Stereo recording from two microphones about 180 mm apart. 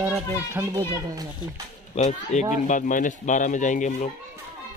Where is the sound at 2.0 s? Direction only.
40° left (ahead or behind).